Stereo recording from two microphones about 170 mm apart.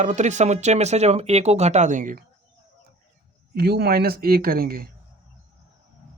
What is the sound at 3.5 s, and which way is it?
Speech, 70° right (ahead or behind).